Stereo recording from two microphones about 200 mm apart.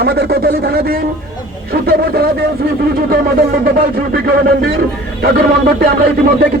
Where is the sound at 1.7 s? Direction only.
50° right (ahead or behind).